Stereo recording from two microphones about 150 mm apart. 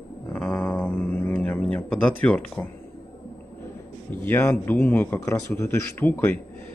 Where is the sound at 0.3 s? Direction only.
5° left (ahead or behind).